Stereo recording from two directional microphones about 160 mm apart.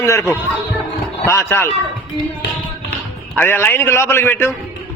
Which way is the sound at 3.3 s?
15° left (ahead or behind).